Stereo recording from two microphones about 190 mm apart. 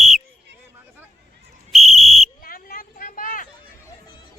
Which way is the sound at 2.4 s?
50° left (ahead or behind).